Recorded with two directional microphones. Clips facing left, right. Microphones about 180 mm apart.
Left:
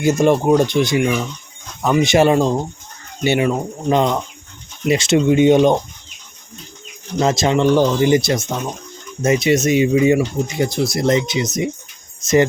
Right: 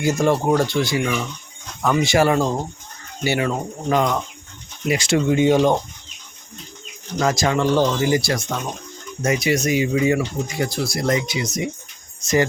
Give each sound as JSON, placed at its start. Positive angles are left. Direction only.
{"t": 0.0, "sound": "speech", "side_deg": 20}
{"t": 7.2, "sound": "speech", "side_deg": 25}